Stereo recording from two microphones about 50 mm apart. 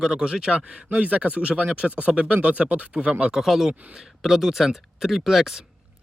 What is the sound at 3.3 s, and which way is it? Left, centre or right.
Speech, centre.